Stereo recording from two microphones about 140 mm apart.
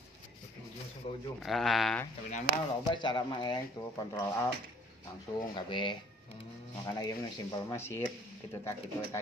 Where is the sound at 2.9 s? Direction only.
35° left (ahead or behind).